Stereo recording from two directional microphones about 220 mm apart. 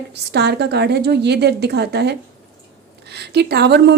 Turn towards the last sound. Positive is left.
turn(degrees=-50)  # may be behind; listen again after turning